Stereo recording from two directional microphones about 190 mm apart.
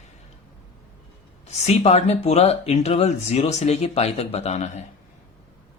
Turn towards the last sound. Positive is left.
turn(degrees=35)  # may be behind; listen again after turning